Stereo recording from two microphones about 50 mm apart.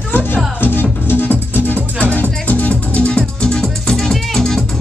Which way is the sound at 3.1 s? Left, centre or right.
Centre.